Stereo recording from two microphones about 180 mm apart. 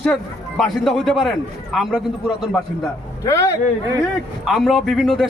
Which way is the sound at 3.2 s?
20° left (ahead or behind).